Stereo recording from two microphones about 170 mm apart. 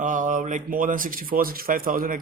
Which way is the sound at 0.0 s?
50° right (ahead or behind).